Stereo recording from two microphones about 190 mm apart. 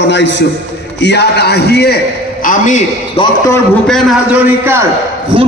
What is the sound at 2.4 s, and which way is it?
Speech, 45° left (ahead or behind).